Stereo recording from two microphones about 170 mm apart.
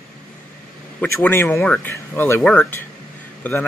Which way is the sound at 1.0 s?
10° left (ahead or behind).